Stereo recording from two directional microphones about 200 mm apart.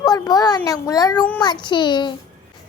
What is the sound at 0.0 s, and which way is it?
A child's voice, 20° left (ahead or behind).